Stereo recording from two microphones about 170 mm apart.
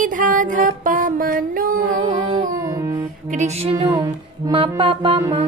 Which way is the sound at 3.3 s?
40° right (ahead or behind).